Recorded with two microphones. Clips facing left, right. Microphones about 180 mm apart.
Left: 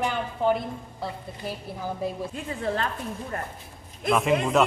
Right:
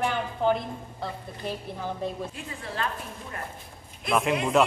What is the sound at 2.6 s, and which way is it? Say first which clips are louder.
Speech: left 4 dB; 45° left (ahead or behind).